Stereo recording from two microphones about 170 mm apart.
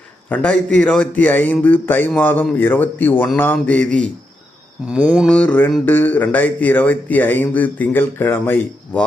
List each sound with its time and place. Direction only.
0.3 s speech: 10° left (ahead or behind)
4.9 s mantra: 5° right (ahead or behind)
5.3 s speech: 5° left (ahead or behind)